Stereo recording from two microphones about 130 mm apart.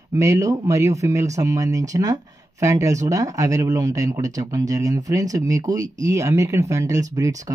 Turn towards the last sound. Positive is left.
turn(degrees=-25)  # may be behind; listen again after turning